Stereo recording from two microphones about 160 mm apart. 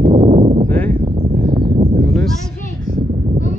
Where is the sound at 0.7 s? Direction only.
10° left (ahead or behind).